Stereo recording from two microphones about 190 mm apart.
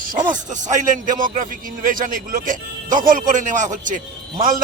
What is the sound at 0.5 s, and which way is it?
A man's voice, 40° right (ahead or behind).